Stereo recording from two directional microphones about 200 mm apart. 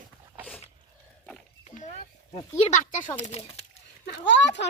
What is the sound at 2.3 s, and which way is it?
Speech, 30° left (ahead or behind).